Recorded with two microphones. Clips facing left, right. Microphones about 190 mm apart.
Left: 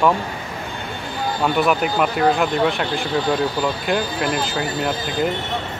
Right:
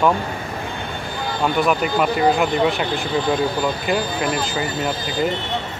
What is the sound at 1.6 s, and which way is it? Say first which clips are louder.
Speech: even; 5° left (ahead or behind).